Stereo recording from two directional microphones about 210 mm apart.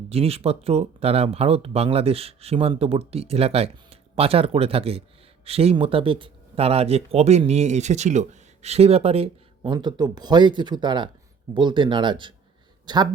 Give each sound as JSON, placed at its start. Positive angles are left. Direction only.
{"t": 0.1, "sound": "a man's voice", "side_deg": -30}